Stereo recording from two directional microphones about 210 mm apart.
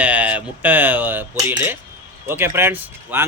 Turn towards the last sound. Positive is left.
turn(degrees=-10)  # may be behind; listen again after turning